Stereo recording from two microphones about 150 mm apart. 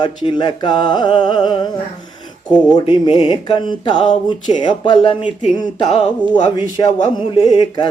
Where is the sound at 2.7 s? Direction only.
30° left (ahead or behind).